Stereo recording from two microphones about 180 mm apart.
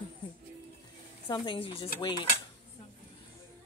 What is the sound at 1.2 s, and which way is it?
A woman's voice, 25° left (ahead or behind).